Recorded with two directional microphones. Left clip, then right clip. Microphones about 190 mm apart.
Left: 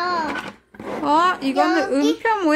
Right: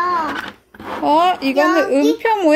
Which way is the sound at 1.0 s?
55° left (ahead or behind).